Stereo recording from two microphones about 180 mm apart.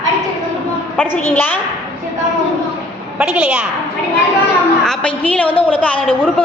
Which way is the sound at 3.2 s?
5° right (ahead or behind).